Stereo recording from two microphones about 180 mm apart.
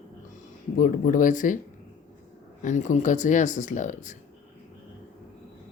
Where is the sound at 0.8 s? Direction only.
50° left (ahead or behind).